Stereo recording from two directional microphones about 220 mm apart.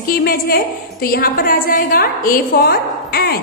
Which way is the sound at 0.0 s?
40° left (ahead or behind).